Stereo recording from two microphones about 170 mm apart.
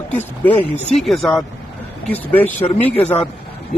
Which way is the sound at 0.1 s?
10° left (ahead or behind).